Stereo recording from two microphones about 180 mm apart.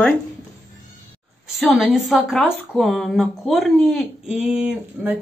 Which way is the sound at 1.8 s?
Centre (ahead or behind).